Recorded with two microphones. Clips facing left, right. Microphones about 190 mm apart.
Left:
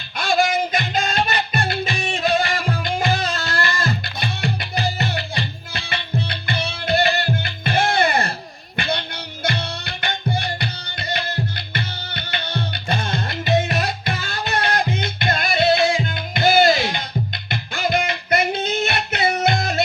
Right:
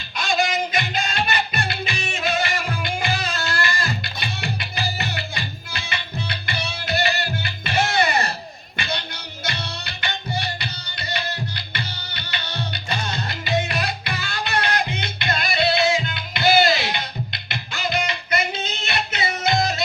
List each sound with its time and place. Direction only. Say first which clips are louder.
0.2 s music: left 3 dB; 55° left (ahead or behind); by 3.5 s 35° left (ahead or behind)
3.7 s music: left 3 dB; 55° left (ahead or behind)
4.9 s music: left 4 dB; 35° left (ahead or behind)
5.4 s music: left 4 dB; 55° left (ahead or behind)
8.7 s a sound: left 5 dB; 50° left (ahead or behind)
9.4 s music: left 6 dB; 55° left (ahead or behind)
13.7 s music: left 3 dB; 35° left (ahead or behind)
15.0 s music: left 3 dB; 50° left (ahead or behind)